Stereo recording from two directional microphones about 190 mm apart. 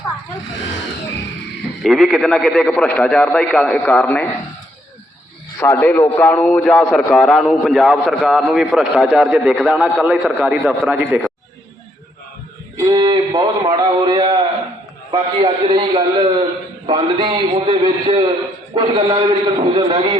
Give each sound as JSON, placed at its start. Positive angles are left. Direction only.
{"t": 1.8, "sound": "a man's voice", "side_deg": 0}
{"t": 5.5, "sound": "a man's voice", "side_deg": 10}
{"t": 12.7, "sound": "a man's voice", "side_deg": -20}